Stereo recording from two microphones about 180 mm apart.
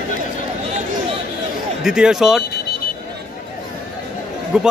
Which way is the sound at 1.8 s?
5° right (ahead or behind).